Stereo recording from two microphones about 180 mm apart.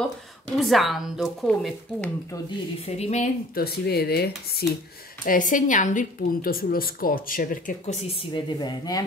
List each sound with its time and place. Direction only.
0.6 s speech: centre (ahead or behind)
3.0 s speech: 40° left (ahead or behind)
3.5 s speech: 60° left (ahead or behind)
5.2 s a woman's voice: 50° left (ahead or behind); by 9.0 s 20° left (ahead or behind)